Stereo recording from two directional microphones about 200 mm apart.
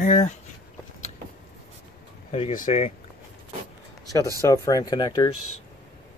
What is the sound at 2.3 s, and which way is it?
Speech, 35° left (ahead or behind).